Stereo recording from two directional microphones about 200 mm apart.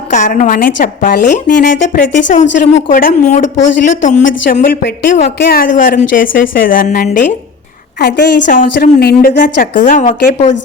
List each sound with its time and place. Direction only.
0.1 s a woman's voice: 40° left (ahead or behind)
7.9 s a woman's voice: 55° left (ahead or behind); by 10.5 s 35° left (ahead or behind)